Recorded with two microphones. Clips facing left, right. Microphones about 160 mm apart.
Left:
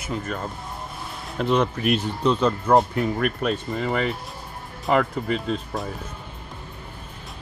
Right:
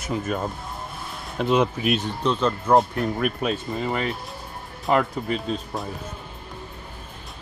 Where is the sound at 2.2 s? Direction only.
10° left (ahead or behind).